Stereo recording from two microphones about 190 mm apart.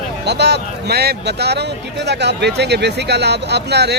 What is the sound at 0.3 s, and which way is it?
Speech, 60° right (ahead or behind).